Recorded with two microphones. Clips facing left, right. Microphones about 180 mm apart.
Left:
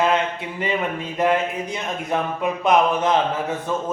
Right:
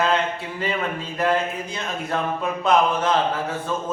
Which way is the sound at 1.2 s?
20° left (ahead or behind).